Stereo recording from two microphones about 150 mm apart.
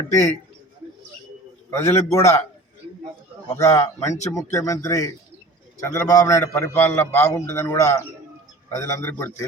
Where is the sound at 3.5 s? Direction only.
20° left (ahead or behind).